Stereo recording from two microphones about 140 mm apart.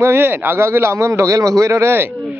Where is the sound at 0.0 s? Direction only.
15° right (ahead or behind).